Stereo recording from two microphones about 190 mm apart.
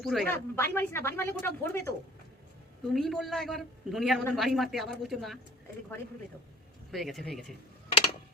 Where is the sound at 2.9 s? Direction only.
Centre (ahead or behind).